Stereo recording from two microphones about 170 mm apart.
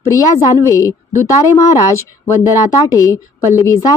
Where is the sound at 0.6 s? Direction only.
15° left (ahead or behind).